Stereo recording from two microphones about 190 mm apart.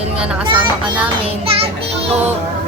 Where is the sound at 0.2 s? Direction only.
5° right (ahead or behind).